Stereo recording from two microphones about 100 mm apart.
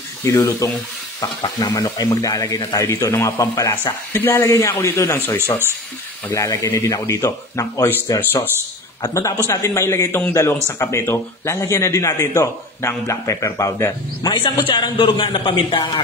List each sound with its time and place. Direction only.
0.2 s a man's voice: 30° left (ahead or behind)
1.2 s speech: 45° left (ahead or behind)
4.1 s a man's voice: 25° left (ahead or behind)
9.0 s a man's voice: 35° left (ahead or behind)
14.4 s a man's voice: 55° left (ahead or behind)